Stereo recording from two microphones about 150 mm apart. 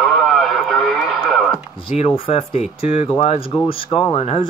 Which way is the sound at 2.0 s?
40° left (ahead or behind).